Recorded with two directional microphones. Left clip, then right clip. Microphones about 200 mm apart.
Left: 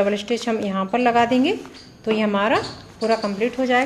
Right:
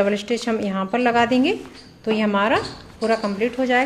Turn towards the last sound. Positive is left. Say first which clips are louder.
# even
turn(degrees=-5)  # may be behind; listen again after turning